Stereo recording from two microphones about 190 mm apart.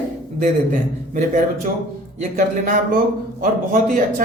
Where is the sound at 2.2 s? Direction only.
45° right (ahead or behind).